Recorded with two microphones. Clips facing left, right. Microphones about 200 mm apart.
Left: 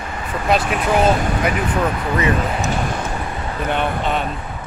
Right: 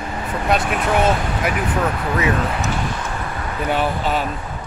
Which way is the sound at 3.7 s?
5° right (ahead or behind).